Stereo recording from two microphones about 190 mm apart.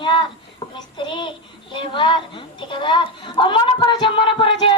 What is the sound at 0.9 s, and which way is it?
Speech, 25° left (ahead or behind).